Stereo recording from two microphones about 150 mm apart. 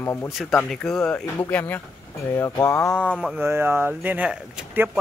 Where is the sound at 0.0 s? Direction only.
15° left (ahead or behind).